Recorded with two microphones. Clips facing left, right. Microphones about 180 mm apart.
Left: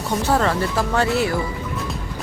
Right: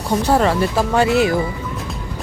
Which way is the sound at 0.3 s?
15° right (ahead or behind).